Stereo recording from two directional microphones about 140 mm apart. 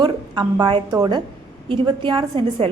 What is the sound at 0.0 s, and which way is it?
A woman's voice, 30° right (ahead or behind).